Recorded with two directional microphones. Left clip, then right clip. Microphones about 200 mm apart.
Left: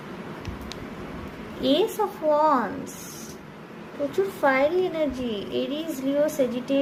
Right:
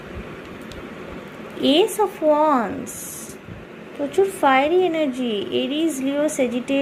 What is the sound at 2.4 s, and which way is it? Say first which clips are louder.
Speech: right 3 dB; 15° right (ahead or behind).